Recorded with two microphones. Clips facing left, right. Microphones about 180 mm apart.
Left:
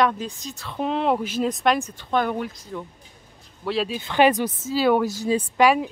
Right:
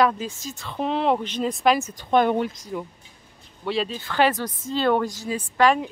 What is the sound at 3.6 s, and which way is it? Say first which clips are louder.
Speech: left 1 dB; centre (ahead or behind).